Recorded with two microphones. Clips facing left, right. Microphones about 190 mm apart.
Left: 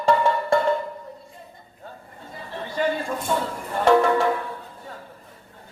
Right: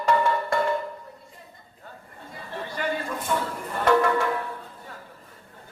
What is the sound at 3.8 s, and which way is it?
Music, 25° left (ahead or behind).